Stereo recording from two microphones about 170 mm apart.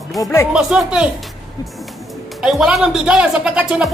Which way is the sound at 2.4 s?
Centre (ahead or behind).